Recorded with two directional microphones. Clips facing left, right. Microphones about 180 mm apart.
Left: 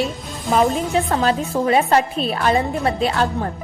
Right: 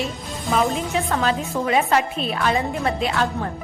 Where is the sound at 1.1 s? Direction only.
35° left (ahead or behind).